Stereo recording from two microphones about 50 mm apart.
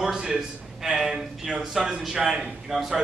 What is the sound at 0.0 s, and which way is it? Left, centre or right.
A man's voice, centre.